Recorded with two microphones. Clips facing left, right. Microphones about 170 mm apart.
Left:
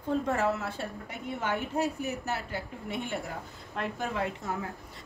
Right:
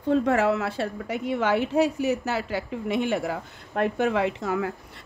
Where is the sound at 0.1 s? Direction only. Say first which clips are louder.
Right 7 dB; 80° right.